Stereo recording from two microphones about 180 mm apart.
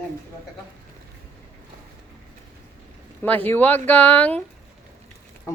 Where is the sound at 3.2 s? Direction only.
10° left (ahead or behind).